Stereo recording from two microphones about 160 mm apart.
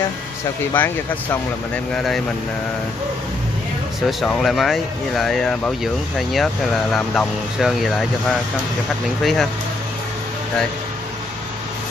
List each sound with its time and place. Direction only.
0.7 s speech: 15° left (ahead or behind)
4.2 s speech: centre (ahead or behind)